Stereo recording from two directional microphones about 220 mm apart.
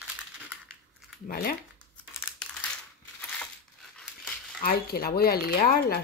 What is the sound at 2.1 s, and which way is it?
Crumpling, 10° left (ahead or behind).